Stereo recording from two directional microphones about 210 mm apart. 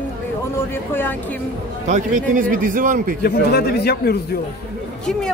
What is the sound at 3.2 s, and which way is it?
Speech, 50° left (ahead or behind).